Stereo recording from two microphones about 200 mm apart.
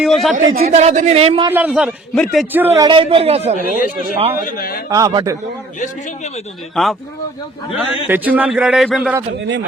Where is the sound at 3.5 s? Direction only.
45° left (ahead or behind).